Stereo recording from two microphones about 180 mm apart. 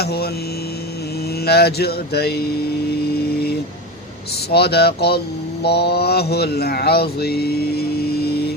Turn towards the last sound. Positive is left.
turn(degrees=60)  # may be behind; listen again after turning